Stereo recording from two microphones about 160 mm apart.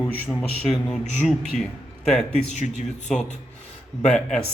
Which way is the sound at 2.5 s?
45° left (ahead or behind).